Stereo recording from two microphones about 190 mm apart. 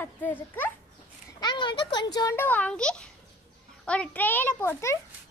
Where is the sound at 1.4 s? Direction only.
25° left (ahead or behind).